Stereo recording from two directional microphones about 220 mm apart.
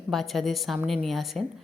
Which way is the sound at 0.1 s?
Centre (ahead or behind).